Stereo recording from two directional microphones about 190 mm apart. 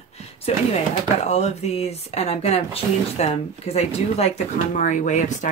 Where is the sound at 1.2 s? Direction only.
35° left (ahead or behind).